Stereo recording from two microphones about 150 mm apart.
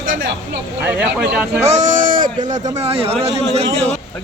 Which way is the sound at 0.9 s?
10° right (ahead or behind).